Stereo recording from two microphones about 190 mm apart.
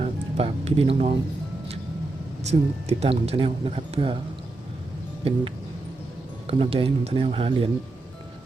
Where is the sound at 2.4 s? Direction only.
35° right (ahead or behind).